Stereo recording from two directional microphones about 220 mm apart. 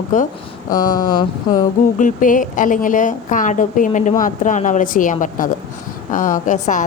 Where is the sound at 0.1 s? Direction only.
35° left (ahead or behind).